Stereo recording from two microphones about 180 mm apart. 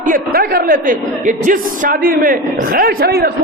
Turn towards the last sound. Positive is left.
turn(degrees=-60)  # may be behind; listen again after turning